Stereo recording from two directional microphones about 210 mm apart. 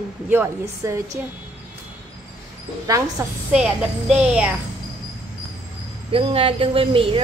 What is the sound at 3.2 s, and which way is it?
A woman's voice, 10° right (ahead or behind).